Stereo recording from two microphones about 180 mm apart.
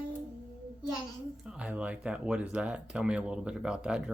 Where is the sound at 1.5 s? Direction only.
5° right (ahead or behind).